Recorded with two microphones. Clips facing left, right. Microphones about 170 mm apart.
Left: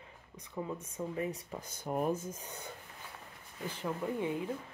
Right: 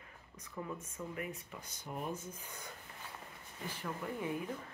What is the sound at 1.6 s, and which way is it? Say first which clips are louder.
Speech: left 9 dB; 45° left (ahead or behind).